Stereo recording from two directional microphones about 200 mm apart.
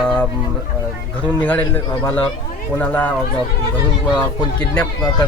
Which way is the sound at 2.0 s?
10° left (ahead or behind).